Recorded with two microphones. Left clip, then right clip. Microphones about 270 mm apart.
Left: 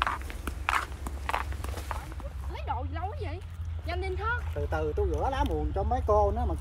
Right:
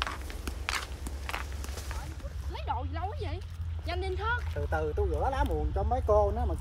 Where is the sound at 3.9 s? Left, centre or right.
Centre.